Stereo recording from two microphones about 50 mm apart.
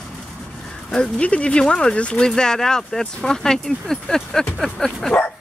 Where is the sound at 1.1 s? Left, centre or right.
Left.